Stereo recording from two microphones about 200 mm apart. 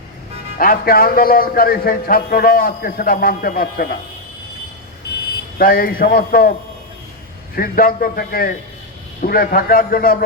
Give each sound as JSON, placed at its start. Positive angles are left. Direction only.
{"t": 0.6, "sound": "speech", "side_deg": 45}
{"t": 5.5, "sound": "speech", "side_deg": 45}
{"t": 7.5, "sound": "speech", "side_deg": 45}